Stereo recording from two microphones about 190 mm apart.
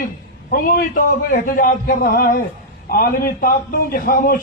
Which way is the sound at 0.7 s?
50° left (ahead or behind).